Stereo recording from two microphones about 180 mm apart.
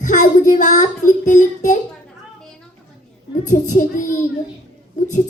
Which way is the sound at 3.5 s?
45° left (ahead or behind).